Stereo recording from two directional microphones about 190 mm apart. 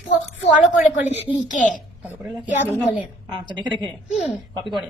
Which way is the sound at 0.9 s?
35° left (ahead or behind).